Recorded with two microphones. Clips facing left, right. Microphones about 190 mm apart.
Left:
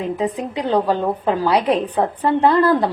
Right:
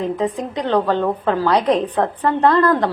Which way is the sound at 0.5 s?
10° left (ahead or behind).